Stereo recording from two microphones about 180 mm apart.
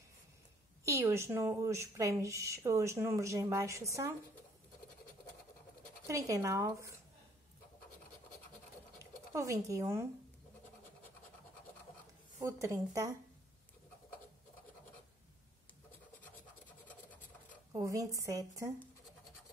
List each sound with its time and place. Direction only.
0.8 s a woman's voice: 15° right (ahead or behind)
6.0 s a woman's voice: 15° right (ahead or behind)
8.9 s speech: 15° right (ahead or behind)
12.4 s a woman's voice: 15° right (ahead or behind)
17.7 s a woman's voice: 20° right (ahead or behind)